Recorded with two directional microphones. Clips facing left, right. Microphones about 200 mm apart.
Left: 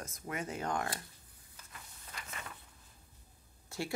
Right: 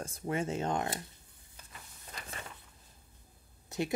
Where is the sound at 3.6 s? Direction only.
20° right (ahead or behind).